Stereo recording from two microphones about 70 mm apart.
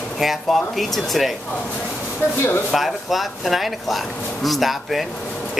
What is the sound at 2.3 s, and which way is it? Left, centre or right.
Speech, left.